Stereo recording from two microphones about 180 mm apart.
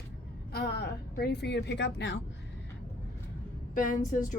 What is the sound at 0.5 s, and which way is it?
A woman's voice, 60° left (ahead or behind).